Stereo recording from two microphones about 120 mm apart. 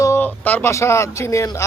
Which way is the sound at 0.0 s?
20° left (ahead or behind).